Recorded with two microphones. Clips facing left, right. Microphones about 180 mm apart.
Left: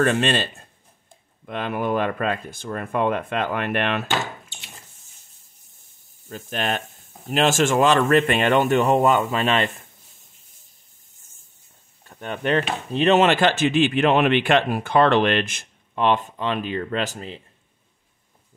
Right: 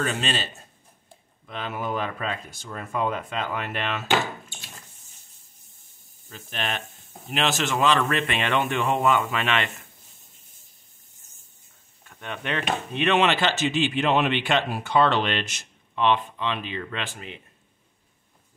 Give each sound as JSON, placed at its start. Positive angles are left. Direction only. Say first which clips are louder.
{"t": 0.1, "sound": "speech", "louder": "left 7 dB", "side_deg": 55}
{"t": 6.2, "sound": "speech", "louder": "left 6 dB", "side_deg": 45}
{"t": 12.0, "sound": "speech", "louder": "left 7 dB", "side_deg": 35}